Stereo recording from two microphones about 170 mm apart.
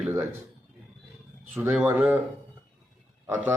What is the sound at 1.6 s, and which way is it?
Speech, 10° right (ahead or behind).